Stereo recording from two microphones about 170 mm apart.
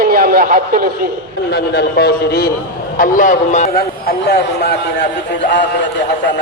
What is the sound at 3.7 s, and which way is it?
A man's voice, 70° left (ahead or behind).